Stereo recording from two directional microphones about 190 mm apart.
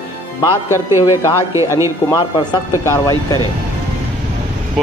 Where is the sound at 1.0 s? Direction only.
15° left (ahead or behind).